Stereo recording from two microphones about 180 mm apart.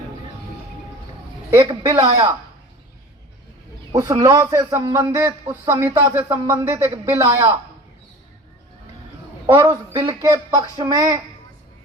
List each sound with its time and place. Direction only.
1.5 s a man's voice: 20° right (ahead or behind)
3.9 s a man's voice: 20° right (ahead or behind)
9.5 s speech: 15° right (ahead or behind)